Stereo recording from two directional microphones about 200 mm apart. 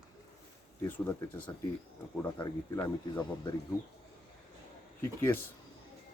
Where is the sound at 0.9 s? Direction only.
10° left (ahead or behind).